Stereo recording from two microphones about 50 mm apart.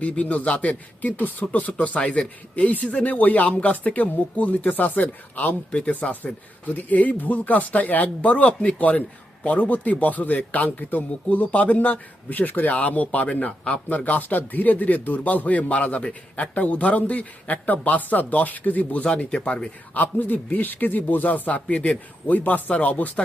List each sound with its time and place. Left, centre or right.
0.0 s speech: left
5.7 s speech: left
19.0 s speech: left
19.9 s speech: left
22.3 s speech: left